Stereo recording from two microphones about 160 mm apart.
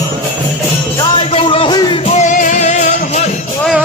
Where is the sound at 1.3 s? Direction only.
35° left (ahead or behind).